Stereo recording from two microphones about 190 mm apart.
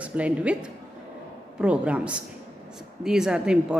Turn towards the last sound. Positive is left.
turn(degrees=-5)  # may be behind; listen again after turning